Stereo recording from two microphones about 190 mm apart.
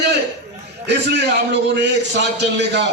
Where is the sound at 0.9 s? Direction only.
60° right (ahead or behind).